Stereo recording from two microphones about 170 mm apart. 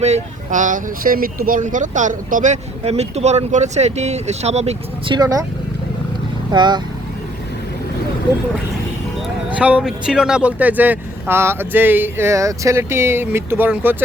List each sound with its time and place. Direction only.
0.0 s speech: 45° right (ahead or behind)
5.1 s speech: 20° right (ahead or behind)
6.5 s speech: 25° right (ahead or behind)
9.5 s speech: 10° right (ahead or behind)